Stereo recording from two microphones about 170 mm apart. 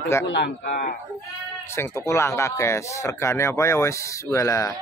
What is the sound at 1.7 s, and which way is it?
Speech, 15° left (ahead or behind).